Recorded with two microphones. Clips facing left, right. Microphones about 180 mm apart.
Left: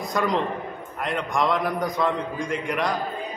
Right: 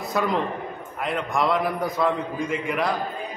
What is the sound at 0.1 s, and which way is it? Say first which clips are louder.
A man's voice: even; 5° right (ahead or behind).